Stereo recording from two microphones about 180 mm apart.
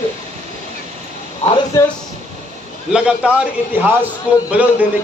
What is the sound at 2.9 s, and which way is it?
A man's voice, 5° right (ahead or behind).